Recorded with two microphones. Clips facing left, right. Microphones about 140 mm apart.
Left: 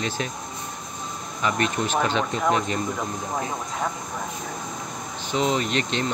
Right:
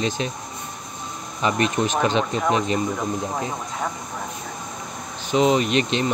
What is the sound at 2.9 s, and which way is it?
Speech, centre (ahead or behind).